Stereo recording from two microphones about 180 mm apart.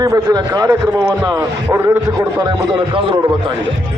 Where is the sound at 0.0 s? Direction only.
20° right (ahead or behind).